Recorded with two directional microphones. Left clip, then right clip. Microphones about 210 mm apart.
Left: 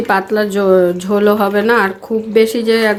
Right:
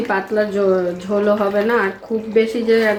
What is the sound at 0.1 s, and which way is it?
Speech, 50° left (ahead or behind).